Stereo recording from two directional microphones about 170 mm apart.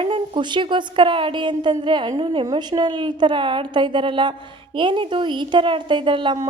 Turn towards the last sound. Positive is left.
turn(degrees=-25)  # may be behind; listen again after turning